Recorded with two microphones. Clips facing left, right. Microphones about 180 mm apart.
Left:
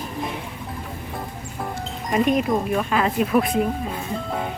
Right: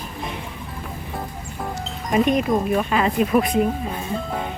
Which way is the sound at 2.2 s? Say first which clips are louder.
Right 1 dB; centre (ahead or behind).